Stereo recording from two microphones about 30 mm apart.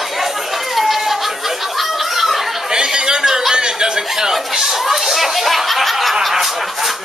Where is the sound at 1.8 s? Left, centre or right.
Centre.